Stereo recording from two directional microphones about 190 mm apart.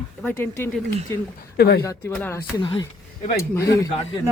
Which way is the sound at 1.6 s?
60° left (ahead or behind).